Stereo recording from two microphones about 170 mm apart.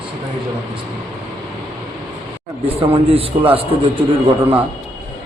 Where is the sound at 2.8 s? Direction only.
35° right (ahead or behind).